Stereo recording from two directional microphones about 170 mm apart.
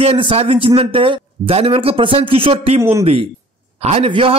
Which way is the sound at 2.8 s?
15° right (ahead or behind).